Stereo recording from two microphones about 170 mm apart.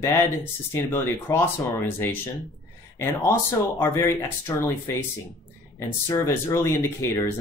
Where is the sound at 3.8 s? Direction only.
15° left (ahead or behind).